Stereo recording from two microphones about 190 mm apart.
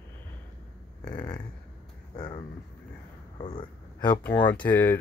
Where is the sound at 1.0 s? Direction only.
20° left (ahead or behind).